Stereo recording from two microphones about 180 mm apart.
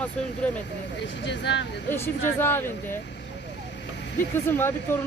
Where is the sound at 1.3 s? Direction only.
75° left (ahead or behind).